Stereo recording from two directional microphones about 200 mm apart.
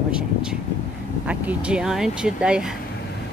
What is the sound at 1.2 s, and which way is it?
Speech, 5° right (ahead or behind).